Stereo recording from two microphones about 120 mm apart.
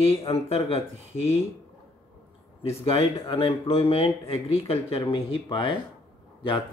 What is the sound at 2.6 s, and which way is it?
Speech, 55° left (ahead or behind).